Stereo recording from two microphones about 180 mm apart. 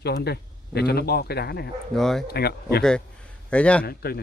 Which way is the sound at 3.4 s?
5° left (ahead or behind).